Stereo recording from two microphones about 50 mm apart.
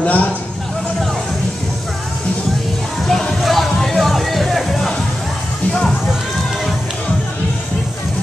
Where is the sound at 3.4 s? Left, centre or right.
Centre.